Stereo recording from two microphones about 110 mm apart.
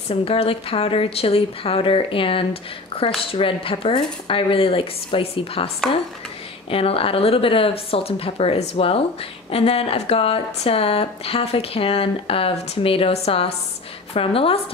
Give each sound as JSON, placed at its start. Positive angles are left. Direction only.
{"t": 0.1, "sound": "speech", "side_deg": 65}
{"t": 6.7, "sound": "speech", "side_deg": 60}